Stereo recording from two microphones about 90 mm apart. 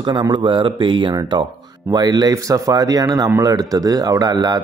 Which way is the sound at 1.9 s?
45° right (ahead or behind).